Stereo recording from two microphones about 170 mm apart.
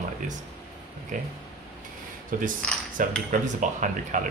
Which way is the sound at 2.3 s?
55° right (ahead or behind).